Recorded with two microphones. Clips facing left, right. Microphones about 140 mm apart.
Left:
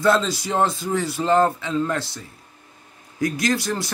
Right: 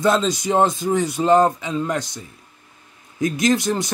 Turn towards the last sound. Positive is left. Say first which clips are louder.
# right 4 dB
turn(degrees=-20)  # may be behind; listen again after turning